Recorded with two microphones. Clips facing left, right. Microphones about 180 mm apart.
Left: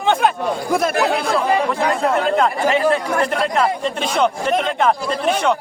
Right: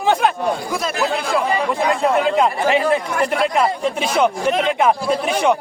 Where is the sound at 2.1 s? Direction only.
10° right (ahead or behind).